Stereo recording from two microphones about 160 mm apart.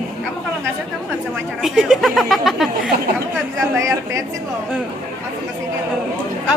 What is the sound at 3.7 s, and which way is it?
Speech, 20° right (ahead or behind).